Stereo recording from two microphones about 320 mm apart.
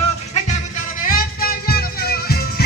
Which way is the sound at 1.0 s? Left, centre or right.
Left.